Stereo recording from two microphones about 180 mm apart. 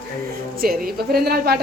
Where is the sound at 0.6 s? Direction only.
55° right (ahead or behind).